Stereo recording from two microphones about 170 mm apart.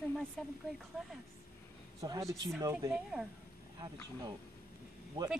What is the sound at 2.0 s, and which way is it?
Speech, 20° right (ahead or behind).